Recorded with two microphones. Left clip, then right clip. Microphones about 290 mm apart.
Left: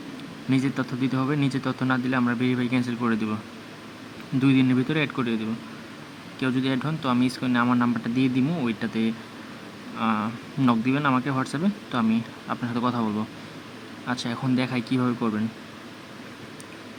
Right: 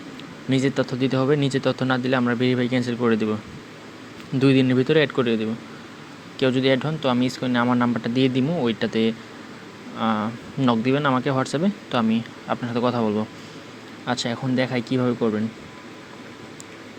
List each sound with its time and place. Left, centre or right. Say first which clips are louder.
0.5 s speech: right 4 dB; centre
4.4 s speech: right 3 dB; centre
6.4 s speech: right 7 dB; centre